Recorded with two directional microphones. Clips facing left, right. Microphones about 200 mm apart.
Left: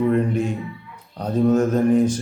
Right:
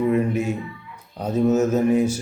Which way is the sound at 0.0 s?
5° right (ahead or behind).